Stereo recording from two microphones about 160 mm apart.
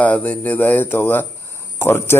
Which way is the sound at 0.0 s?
10° left (ahead or behind).